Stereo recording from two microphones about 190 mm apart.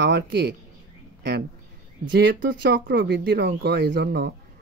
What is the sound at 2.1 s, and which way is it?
A woman's voice, 60° right (ahead or behind).